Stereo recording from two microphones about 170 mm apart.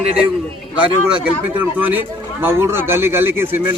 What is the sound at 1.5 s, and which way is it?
Speech, 10° right (ahead or behind).